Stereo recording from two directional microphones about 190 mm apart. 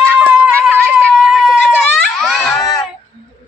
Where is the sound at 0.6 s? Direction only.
Centre (ahead or behind).